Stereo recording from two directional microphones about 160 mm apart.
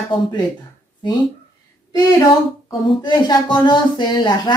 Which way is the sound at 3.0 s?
30° left (ahead or behind).